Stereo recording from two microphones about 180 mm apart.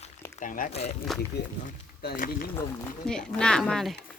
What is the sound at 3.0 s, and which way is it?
Speech, 5° left (ahead or behind).